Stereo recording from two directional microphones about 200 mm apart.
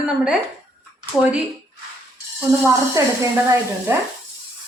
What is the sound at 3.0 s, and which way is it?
A woman's voice, 15° right (ahead or behind).